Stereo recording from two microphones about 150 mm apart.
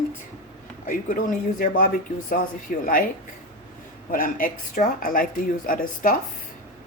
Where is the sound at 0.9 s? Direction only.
65° left (ahead or behind).